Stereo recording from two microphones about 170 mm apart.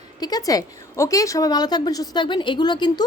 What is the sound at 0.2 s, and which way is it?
A woman's voice, 20° left (ahead or behind).